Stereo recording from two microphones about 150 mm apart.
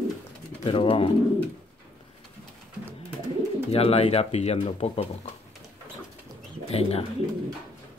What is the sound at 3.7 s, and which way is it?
Speech, 40° left (ahead or behind).